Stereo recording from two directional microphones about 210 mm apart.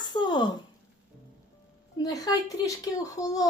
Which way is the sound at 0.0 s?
20° left (ahead or behind).